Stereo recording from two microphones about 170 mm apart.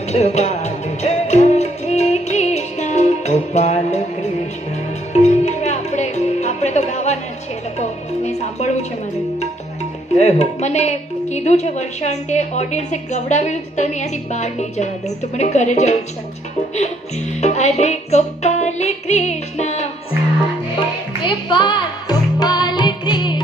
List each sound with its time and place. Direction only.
0.1 s music: 40° left (ahead or behind)
5.1 s music: 40° left (ahead or behind)
7.8 s speech: 40° left (ahead or behind)
10.1 s a woman's voice: 40° left (ahead or behind)
17.4 s music: 40° left (ahead or behind)
21.2 s music: 30° left (ahead or behind)